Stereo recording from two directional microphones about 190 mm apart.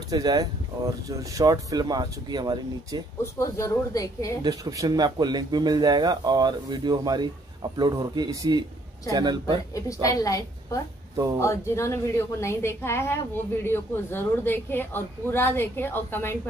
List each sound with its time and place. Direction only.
0.1 s speech: 20° right (ahead or behind)
3.3 s a woman's voice: 15° left (ahead or behind)
4.4 s speech: 20° right (ahead or behind)
10.0 s a woman's voice: 15° left (ahead or behind)